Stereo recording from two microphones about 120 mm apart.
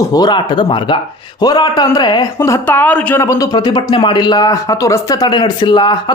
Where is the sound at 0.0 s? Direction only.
30° left (ahead or behind).